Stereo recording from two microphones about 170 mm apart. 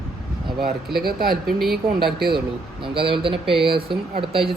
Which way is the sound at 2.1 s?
65° right (ahead or behind).